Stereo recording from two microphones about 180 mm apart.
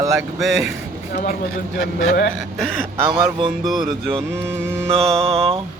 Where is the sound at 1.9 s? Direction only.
60° left (ahead or behind).